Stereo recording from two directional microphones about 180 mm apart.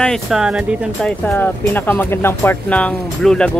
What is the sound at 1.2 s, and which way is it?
Speech, 10° left (ahead or behind).